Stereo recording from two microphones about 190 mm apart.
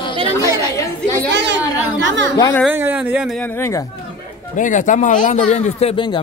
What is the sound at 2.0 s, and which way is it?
Speech, 80° right.